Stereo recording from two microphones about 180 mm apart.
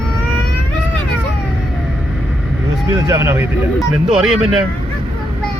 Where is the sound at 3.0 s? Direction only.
15° right (ahead or behind).